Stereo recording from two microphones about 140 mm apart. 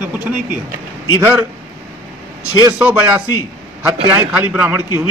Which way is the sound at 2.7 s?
10° right (ahead or behind).